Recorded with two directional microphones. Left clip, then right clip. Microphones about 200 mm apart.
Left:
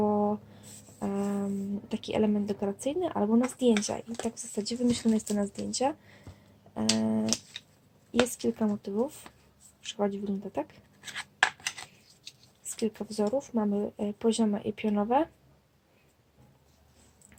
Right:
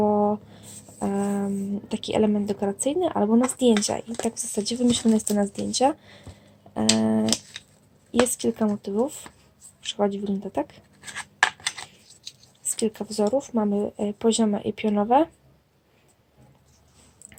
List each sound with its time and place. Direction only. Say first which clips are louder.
0.0 s writing: right 6 dB; 5° right (ahead or behind)
0.9 s music: right 6 dB; 5° right (ahead or behind)
1.9 s speech: right 6 dB; 5° right (ahead or behind)
9.8 s writing: right 6 dB; 10° right (ahead or behind)
12.3 s a sound: right 7 dB; 20° right (ahead or behind)
12.6 s speech: right 6 dB; 10° right (ahead or behind)